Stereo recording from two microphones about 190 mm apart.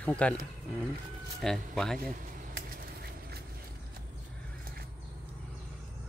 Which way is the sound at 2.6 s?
55° right (ahead or behind).